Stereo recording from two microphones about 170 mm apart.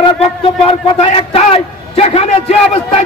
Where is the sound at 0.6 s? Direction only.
35° left (ahead or behind).